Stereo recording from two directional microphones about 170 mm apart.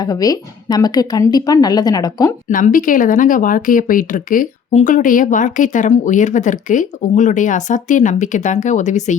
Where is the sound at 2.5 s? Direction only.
50° left (ahead or behind).